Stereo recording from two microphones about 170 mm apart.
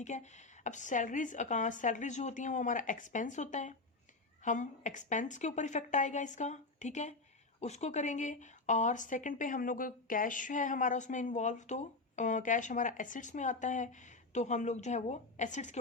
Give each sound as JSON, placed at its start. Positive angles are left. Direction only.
{"t": 0.0, "sound": "a woman's voice", "side_deg": 45}